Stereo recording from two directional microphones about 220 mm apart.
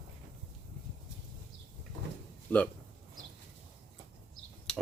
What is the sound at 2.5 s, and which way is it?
Speech, 10° left (ahead or behind).